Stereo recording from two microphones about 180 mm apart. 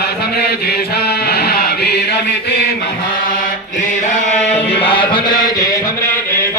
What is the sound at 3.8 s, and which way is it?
Mantra, 40° left (ahead or behind).